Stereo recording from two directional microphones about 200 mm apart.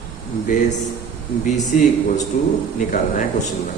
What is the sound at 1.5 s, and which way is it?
A man's voice, 35° left (ahead or behind).